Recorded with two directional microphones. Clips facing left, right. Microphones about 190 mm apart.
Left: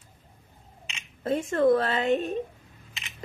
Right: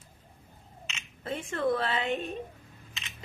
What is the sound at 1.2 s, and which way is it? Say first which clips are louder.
A woman's voice: left 8 dB; 40° left (ahead or behind).